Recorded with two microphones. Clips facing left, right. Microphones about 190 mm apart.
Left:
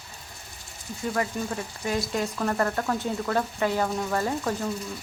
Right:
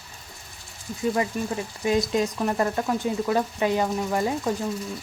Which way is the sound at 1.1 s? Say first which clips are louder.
Even; 20° right (ahead or behind).